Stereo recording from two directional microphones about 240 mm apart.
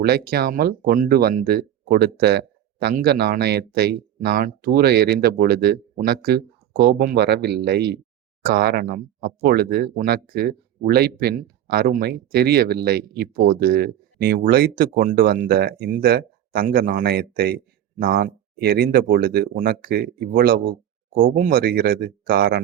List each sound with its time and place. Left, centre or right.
0.0 s speech: right